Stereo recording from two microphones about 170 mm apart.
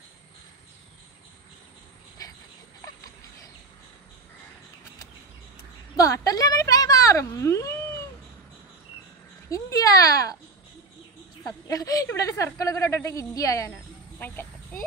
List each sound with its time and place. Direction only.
5.9 s speech: 20° left (ahead or behind)
9.5 s speech: 20° left (ahead or behind)
11.4 s speech: 20° left (ahead or behind)